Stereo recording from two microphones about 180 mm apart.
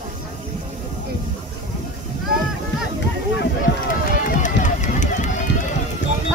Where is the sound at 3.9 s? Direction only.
45° left (ahead or behind).